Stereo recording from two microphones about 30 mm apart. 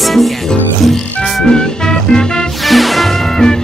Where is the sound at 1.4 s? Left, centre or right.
Left.